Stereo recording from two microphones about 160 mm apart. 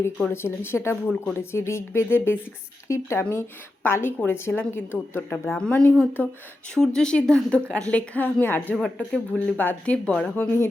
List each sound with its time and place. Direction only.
0.4 s a woman's voice: 15° left (ahead or behind)